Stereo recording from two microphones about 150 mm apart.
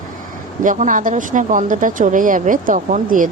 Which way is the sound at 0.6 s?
60° right (ahead or behind).